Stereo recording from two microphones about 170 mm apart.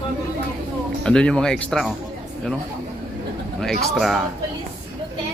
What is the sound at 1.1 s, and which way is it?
Speech, 5° left (ahead or behind).